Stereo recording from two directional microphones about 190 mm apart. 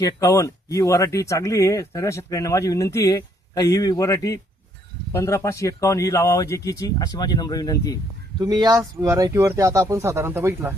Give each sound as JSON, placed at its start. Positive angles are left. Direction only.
{"t": 0.0, "sound": "speech", "side_deg": 15}
{"t": 8.4, "sound": "speech", "side_deg": -20}